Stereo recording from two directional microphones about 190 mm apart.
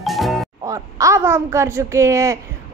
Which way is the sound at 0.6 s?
15° right (ahead or behind).